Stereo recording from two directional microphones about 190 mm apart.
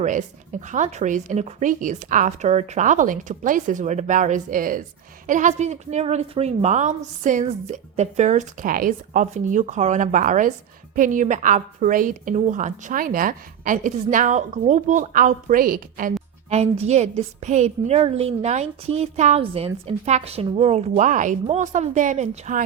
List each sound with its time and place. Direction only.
0.0 s a woman's voice: 40° right (ahead or behind)
16.5 s a woman's voice: 35° right (ahead or behind)